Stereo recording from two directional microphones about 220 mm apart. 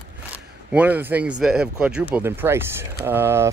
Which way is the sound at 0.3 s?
5° right (ahead or behind).